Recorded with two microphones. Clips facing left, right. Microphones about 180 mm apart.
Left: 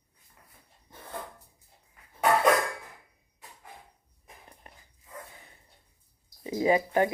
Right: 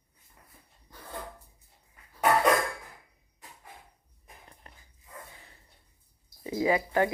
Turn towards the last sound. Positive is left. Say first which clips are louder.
# left 2 dB
turn(degrees=20)  # may be behind; listen again after turning